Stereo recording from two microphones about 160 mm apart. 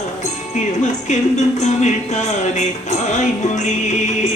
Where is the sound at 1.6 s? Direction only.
45° left (ahead or behind).